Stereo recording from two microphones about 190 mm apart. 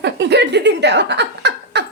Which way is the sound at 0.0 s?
65° right (ahead or behind).